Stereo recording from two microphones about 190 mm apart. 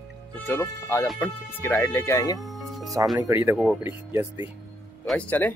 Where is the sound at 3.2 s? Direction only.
10° right (ahead or behind).